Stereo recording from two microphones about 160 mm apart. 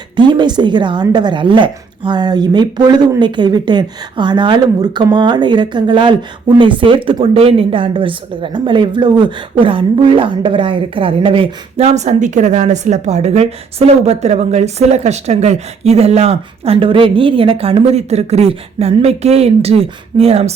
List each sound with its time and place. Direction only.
0.2 s speech: 25° right (ahead or behind)